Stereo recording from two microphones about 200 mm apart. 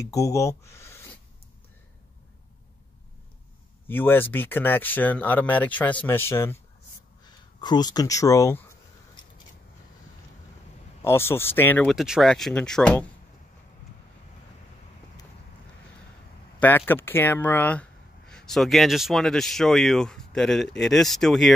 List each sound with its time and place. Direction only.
0.1 s speech: 15° left (ahead or behind)
3.8 s speech: 10° left (ahead or behind)
7.2 s a sound: 20° left (ahead or behind)
11.0 s speech: 10° left (ahead or behind)
16.5 s speech: 10° left (ahead or behind)